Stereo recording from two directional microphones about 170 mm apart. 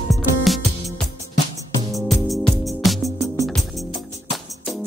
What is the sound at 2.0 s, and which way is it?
Music, centre (ahead or behind).